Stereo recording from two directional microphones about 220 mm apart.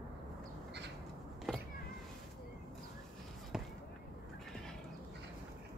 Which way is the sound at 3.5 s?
Centre (ahead or behind).